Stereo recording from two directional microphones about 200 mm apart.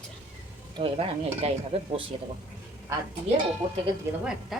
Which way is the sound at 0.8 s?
30° right (ahead or behind).